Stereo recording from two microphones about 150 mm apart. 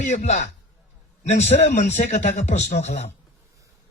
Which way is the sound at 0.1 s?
50° left (ahead or behind).